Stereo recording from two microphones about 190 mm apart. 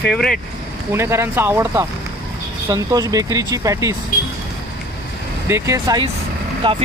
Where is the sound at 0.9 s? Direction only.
15° right (ahead or behind).